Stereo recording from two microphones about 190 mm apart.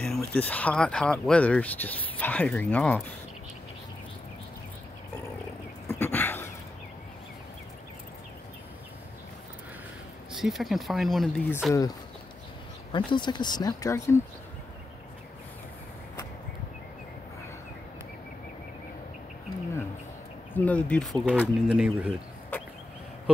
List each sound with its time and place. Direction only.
0.0 s speech: 5° left (ahead or behind)
5.9 s a sound: 10° left (ahead or behind)
10.3 s speech: centre (ahead or behind)
12.9 s speech: 25° left (ahead or behind)
20.5 s speech: 5° left (ahead or behind)